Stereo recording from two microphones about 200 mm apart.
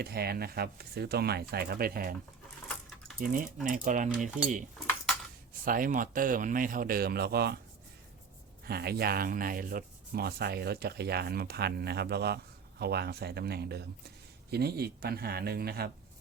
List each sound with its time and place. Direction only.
0.0 s speech: 50° right (ahead or behind)
3.2 s a sound: 45° right (ahead or behind)
5.6 s speech: 45° right (ahead or behind)
8.6 s speech: 50° right (ahead or behind)